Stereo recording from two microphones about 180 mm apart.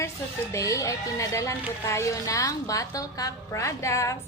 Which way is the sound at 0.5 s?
15° left (ahead or behind).